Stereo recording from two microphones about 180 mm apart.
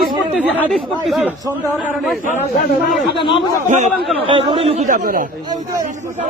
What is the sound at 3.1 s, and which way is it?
Speech, 30° left (ahead or behind).